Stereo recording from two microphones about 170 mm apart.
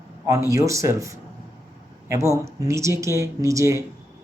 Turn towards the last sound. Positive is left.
turn(degrees=-15)  # may be behind; listen again after turning